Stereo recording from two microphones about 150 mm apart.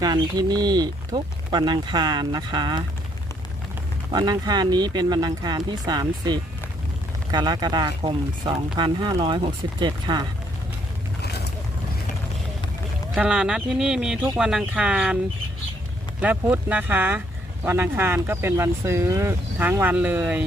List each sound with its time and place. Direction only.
0.0 s speech: 25° right (ahead or behind)
4.1 s speech: 30° right (ahead or behind)
13.1 s speech: 5° right (ahead or behind)
16.2 s speech: 10° right (ahead or behind)